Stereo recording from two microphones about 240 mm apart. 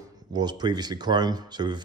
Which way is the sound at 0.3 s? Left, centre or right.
Centre.